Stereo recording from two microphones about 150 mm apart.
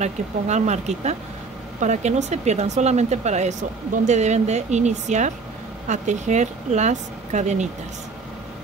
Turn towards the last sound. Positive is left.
turn(degrees=-50)  # may be behind; listen again after turning